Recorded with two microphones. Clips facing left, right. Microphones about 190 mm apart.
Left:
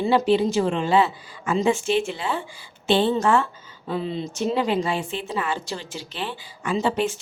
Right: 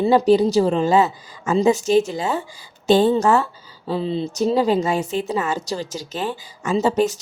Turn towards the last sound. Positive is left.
turn(degrees=-40)  # may be behind; listen again after turning